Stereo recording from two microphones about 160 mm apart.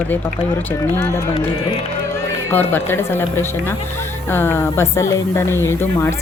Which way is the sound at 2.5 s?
10° left (ahead or behind).